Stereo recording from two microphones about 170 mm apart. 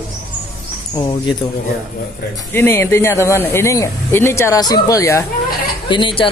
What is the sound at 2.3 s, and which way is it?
Speech, 10° left (ahead or behind).